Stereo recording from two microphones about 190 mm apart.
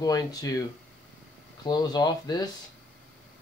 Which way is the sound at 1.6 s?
20° left (ahead or behind).